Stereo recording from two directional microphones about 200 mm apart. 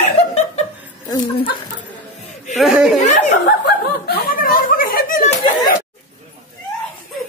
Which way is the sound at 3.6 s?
55° left (ahead or behind).